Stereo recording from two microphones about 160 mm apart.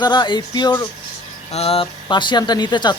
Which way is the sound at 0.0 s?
30° left (ahead or behind).